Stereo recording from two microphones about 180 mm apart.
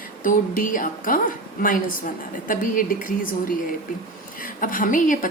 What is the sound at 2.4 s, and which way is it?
Speech, 50° left (ahead or behind).